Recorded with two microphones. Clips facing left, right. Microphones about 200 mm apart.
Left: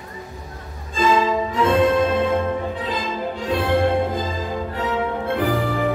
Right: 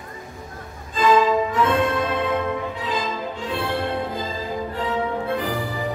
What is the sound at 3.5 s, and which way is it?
Music, 45° left (ahead or behind).